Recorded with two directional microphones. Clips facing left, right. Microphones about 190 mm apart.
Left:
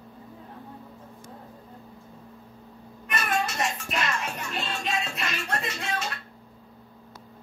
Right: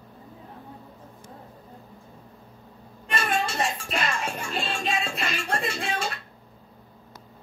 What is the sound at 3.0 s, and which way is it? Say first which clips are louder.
Music: right 1 dB; 30° right (ahead or behind).